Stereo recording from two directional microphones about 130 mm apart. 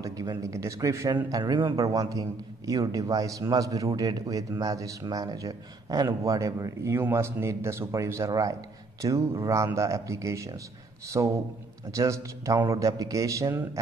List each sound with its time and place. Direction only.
0.0 s a man's voice: 25° right (ahead or behind)